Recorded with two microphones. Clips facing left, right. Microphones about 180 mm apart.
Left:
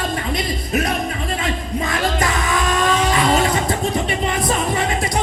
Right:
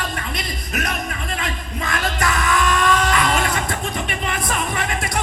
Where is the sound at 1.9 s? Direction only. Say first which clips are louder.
Left 1 dB; 25° left (ahead or behind).